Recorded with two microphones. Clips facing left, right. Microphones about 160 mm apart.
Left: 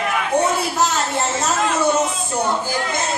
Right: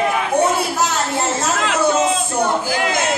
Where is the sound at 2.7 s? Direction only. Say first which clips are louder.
Right 4 dB; 90° right.